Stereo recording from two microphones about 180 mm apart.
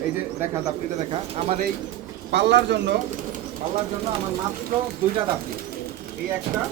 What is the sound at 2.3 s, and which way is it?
Speech, 75° right (ahead or behind).